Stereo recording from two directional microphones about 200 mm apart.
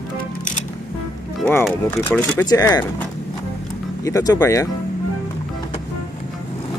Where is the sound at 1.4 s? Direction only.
5° left (ahead or behind).